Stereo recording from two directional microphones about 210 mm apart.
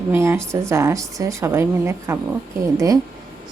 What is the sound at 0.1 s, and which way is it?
A woman's voice, 10° right (ahead or behind).